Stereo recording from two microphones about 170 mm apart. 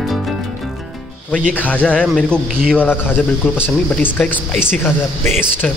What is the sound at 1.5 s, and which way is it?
Speech, 10° left (ahead or behind).